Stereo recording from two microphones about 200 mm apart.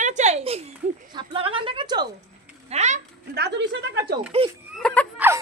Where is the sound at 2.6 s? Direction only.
35° right (ahead or behind).